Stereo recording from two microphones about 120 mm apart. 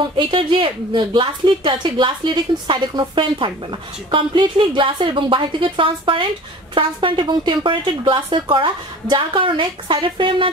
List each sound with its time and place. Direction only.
0.2 s a woman's voice: 45° right (ahead or behind)